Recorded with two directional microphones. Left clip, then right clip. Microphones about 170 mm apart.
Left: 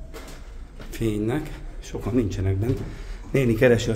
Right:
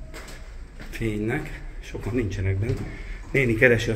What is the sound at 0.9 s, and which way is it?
Speech, 20° left (ahead or behind).